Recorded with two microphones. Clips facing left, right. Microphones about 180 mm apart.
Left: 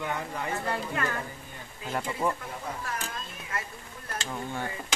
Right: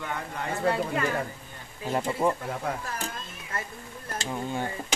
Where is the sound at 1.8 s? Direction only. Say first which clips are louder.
Right 4 dB; 30° right (ahead or behind).